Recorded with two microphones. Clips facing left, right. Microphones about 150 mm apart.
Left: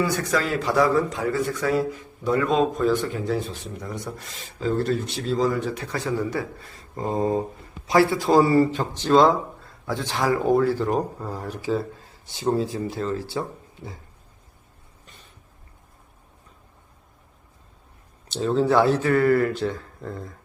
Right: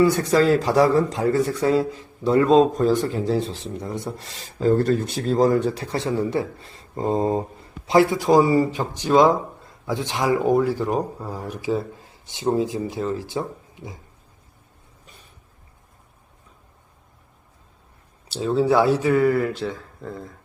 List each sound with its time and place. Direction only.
0.0 s a man's voice: 30° right (ahead or behind)
4.5 s a man's voice: 45° right (ahead or behind); by 13.4 s 15° right (ahead or behind)
18.3 s speech: 5° right (ahead or behind)